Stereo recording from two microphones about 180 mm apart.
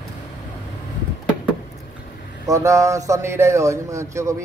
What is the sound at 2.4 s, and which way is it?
Speech, 20° right (ahead or behind).